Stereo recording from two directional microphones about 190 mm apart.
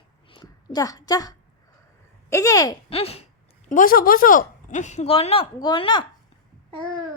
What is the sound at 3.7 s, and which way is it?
Speech, 50° left (ahead or behind).